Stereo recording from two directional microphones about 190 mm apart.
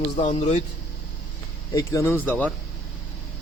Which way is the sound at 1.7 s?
15° left (ahead or behind).